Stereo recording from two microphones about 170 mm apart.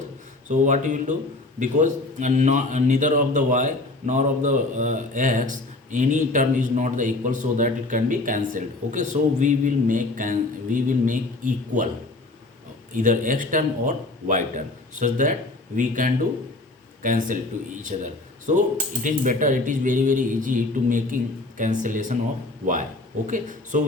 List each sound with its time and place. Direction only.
0.4 s a man's voice: 45° right (ahead or behind)
12.9 s a man's voice: 50° right (ahead or behind)